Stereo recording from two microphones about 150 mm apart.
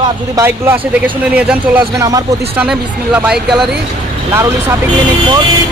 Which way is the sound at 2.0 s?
25° right (ahead or behind).